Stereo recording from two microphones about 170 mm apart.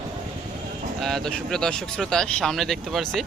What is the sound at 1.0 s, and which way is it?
Speech, centre (ahead or behind).